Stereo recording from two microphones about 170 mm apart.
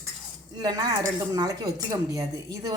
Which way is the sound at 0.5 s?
20° right (ahead or behind).